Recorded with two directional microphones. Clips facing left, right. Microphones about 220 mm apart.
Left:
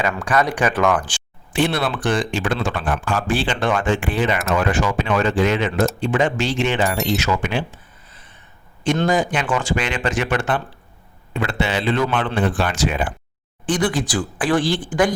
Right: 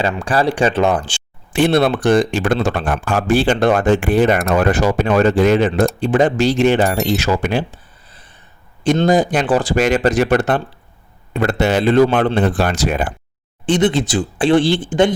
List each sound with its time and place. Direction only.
0.1 s speech: 30° right (ahead or behind)
1.5 s speech: 45° right (ahead or behind)
7.2 s a sound: 35° right (ahead or behind)
9.0 s speech: 35° right (ahead or behind)
13.7 s speech: 25° right (ahead or behind)